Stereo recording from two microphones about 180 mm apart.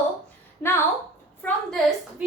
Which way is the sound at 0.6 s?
10° left (ahead or behind).